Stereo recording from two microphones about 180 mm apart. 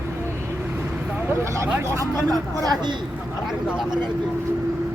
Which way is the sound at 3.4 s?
Centre (ahead or behind).